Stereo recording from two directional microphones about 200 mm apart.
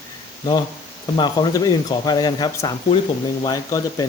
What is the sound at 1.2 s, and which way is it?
Speech, 20° left (ahead or behind).